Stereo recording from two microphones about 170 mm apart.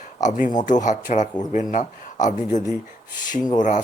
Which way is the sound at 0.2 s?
50° left (ahead or behind).